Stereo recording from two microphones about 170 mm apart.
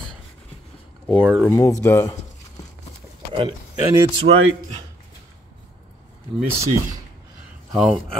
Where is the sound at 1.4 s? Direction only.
20° left (ahead or behind).